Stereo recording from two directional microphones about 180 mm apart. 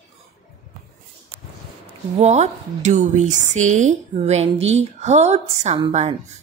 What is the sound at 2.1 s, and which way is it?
A woman's voice, 40° right (ahead or behind).